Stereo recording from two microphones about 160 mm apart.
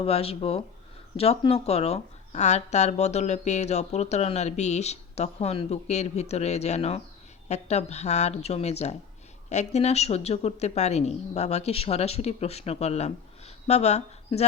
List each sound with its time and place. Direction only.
0.0 s speech: 40° left (ahead or behind)